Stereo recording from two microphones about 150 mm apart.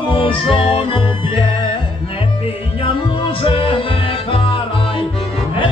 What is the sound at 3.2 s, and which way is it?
Music, 40° left (ahead or behind).